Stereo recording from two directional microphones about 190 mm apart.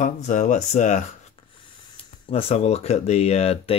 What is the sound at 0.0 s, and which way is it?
Speech, 40° left (ahead or behind).